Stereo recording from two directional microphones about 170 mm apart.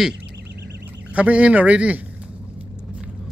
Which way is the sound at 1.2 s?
10° right (ahead or behind).